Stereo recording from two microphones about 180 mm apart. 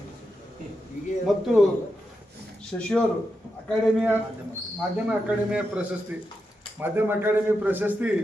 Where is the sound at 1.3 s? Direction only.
Centre (ahead or behind).